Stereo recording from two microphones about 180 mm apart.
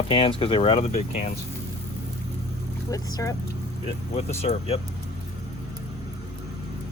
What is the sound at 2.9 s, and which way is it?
Speech, 20° left (ahead or behind).